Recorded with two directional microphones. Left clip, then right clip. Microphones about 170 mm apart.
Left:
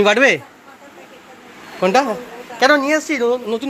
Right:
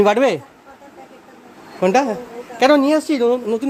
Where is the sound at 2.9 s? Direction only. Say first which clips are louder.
Right 1 dB; 45° right (ahead or behind).